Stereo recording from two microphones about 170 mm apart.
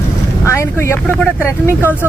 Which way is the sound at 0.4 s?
15° left (ahead or behind).